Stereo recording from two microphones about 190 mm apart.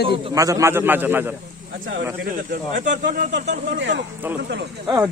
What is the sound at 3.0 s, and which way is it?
Speech, 60° right (ahead or behind).